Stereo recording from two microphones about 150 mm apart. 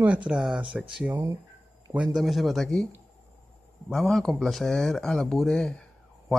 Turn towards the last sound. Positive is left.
turn(degrees=5)  # may be behind; listen again after turning